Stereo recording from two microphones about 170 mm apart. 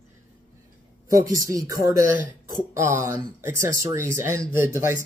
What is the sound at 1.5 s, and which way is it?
Speech, 20° right (ahead or behind).